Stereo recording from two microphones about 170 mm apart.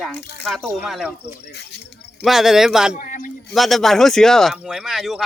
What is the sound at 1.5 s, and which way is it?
Speech, 75° left (ahead or behind).